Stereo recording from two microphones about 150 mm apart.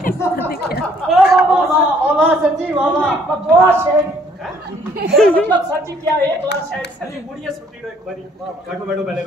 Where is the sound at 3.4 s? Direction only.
15° right (ahead or behind).